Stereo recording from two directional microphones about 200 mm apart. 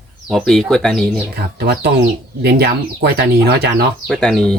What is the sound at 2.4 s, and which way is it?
Speech, 55° right (ahead or behind).